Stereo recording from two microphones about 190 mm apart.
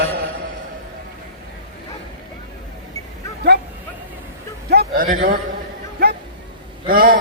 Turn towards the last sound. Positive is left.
turn(degrees=-50)  # may be behind; listen again after turning